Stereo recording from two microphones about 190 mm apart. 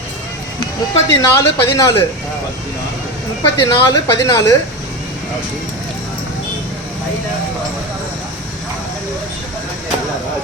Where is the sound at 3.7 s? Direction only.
20° left (ahead or behind).